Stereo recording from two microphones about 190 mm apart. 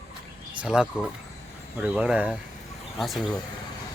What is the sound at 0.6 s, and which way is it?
Speech, 5° right (ahead or behind).